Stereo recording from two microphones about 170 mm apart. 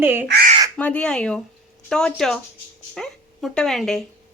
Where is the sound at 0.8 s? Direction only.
10° left (ahead or behind).